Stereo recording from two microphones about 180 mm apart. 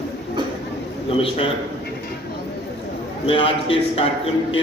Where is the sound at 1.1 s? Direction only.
30° left (ahead or behind).